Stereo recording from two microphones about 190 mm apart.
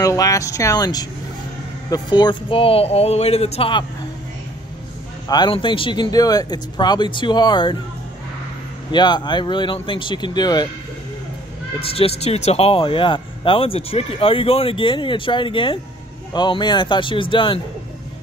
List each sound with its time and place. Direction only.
0.0 s speech: 20° left (ahead or behind)
5.3 s speech: 25° left (ahead or behind)
8.9 s speech: 20° left (ahead or behind)
11.9 s speech: 30° left (ahead or behind)